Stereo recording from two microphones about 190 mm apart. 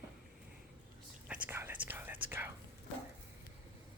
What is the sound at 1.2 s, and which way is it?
Whispering, 10° right (ahead or behind).